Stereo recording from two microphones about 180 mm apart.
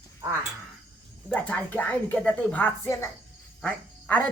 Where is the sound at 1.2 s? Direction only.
10° left (ahead or behind).